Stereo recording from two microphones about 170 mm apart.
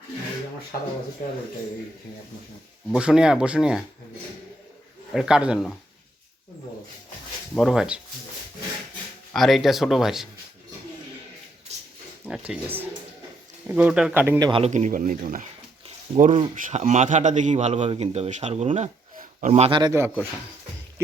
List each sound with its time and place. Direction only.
2.9 s speech: 5° right (ahead or behind)
5.1 s speech: 5° right (ahead or behind)
7.5 s speech: centre (ahead or behind)
9.3 s speech: centre (ahead or behind)
11.7 s pig: 40° right (ahead or behind)
12.3 s speech: 5° right (ahead or behind)
14.3 s speech: 20° right (ahead or behind)
14.6 s speech: 45° right (ahead or behind)
19.8 s speech: 15° right (ahead or behind)